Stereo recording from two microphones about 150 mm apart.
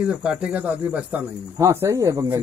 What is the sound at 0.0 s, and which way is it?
Speech, 5° right (ahead or behind).